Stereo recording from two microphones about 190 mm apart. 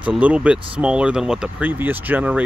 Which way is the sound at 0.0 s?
5° right (ahead or behind).